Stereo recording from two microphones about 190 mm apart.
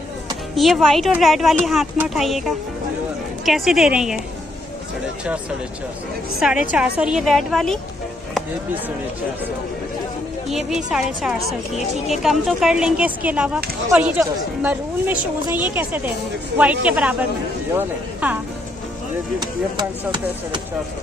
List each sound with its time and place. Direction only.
0.6 s speech: centre (ahead or behind)
6.7 s speech: 5° right (ahead or behind)
10.5 s speech: centre (ahead or behind)
19.8 s speech: 25° right (ahead or behind)